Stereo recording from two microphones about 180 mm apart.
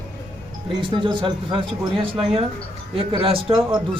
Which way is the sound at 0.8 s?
30° right (ahead or behind).